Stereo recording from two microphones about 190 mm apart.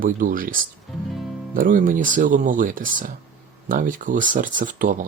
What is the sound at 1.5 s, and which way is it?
Speech, 45° right (ahead or behind).